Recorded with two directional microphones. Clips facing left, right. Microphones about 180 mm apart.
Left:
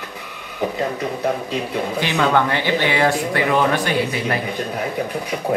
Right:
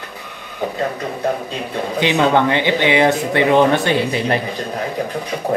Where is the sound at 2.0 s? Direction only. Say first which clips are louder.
Right 4 dB; 20° right (ahead or behind).